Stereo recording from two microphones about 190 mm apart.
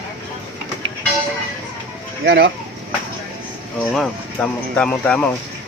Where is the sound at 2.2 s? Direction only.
75° right (ahead or behind).